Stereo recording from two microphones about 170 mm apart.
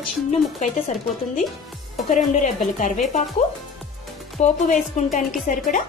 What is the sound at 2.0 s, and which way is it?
Speech, 45° left (ahead or behind).